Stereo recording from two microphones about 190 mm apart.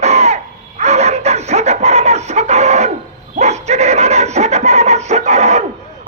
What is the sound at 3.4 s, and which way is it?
Dog, 35° right (ahead or behind).